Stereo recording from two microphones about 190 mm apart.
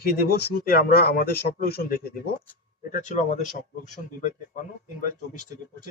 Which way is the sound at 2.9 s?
40° left (ahead or behind).